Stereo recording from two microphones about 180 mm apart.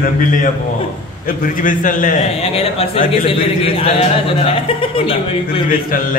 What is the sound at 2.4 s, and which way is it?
Speech, 35° left (ahead or behind).